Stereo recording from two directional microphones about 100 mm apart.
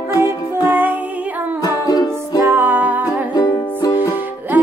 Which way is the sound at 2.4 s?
20° right (ahead or behind).